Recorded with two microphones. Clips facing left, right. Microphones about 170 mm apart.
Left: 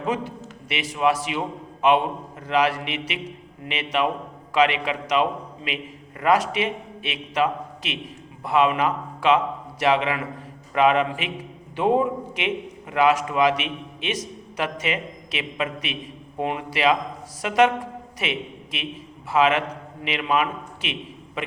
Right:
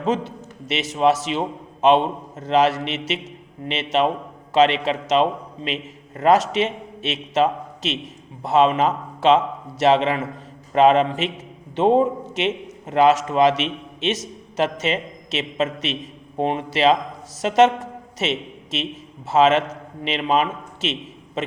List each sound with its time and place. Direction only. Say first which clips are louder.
0.7 s a man's voice: right 4 dB; 25° right (ahead or behind)
3.2 s a sound: right 4 dB; 25° right (ahead or behind)
4.5 s a man's voice: right 4 dB; 25° right (ahead or behind)